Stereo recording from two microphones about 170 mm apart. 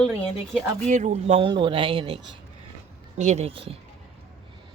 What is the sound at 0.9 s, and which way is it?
Speech, 40° right (ahead or behind).